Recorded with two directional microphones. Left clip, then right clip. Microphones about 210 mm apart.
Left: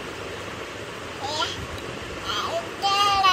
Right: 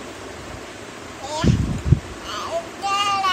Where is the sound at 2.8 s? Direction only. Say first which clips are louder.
Left 1 dB; 20° right (ahead or behind).